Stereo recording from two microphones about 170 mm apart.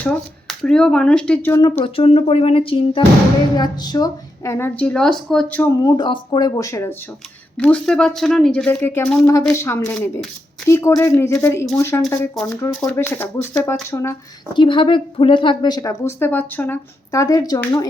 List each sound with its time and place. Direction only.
0.0 s speech: 5° left (ahead or behind)
1.8 s a woman's voice: 35° left (ahead or behind); by 5.8 s 10° left (ahead or behind)
5.8 s a woman's voice: 25° left (ahead or behind)
7.6 s a woman's voice: 5° left (ahead or behind)
14.5 s a woman's voice: 30° left (ahead or behind)